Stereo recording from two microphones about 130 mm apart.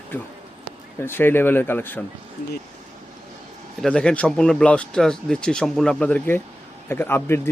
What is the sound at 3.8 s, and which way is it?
Speech, 5° left (ahead or behind).